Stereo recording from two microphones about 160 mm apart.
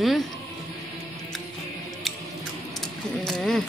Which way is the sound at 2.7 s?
5° left (ahead or behind).